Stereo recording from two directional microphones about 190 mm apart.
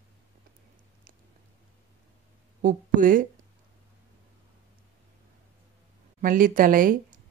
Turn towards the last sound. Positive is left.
turn(degrees=-45)  # may be behind; listen again after turning